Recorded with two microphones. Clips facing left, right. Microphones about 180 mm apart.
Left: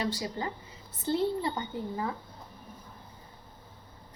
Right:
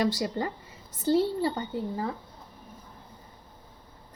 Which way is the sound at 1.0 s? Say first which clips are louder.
Right 4 dB; 40° right (ahead or behind).